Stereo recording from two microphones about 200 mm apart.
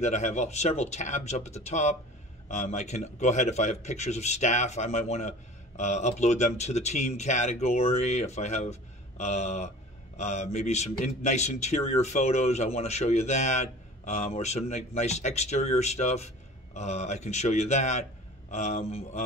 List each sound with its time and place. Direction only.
0.0 s a man's voice: 35° left (ahead or behind)